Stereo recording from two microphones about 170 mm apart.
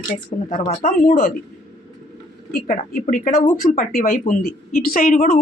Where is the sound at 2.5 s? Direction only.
55° left (ahead or behind).